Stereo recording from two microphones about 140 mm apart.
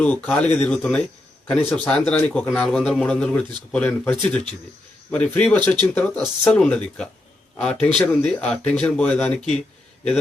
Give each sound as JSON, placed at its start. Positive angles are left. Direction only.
{"t": 0.0, "sound": "a man's voice", "side_deg": 10}